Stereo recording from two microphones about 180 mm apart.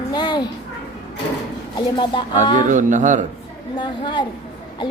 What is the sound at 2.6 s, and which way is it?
Speech, 45° right (ahead or behind).